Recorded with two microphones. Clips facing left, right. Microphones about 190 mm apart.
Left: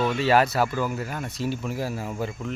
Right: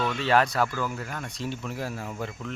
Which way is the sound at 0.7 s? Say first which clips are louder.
Left 4 dB; 15° left (ahead or behind).